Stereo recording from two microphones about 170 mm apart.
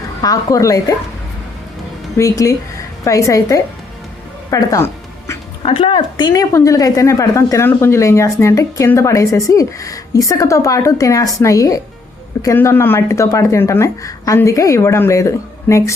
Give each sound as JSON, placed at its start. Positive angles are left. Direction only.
{"t": 0.2, "sound": "a woman's voice", "side_deg": 20}
{"t": 2.1, "sound": "a woman's voice", "side_deg": 20}
{"t": 5.6, "sound": "a woman's voice", "side_deg": 30}